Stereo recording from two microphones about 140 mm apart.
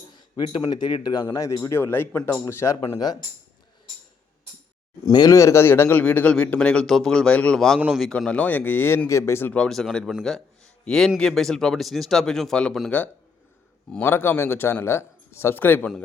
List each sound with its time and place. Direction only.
0.4 s speech: 50° left (ahead or behind)
0.7 s speech: 30° left (ahead or behind)
5.1 s a man's voice: 25° left (ahead or behind); by 12.9 s 5° left (ahead or behind)
13.9 s a man's voice: 15° left (ahead or behind)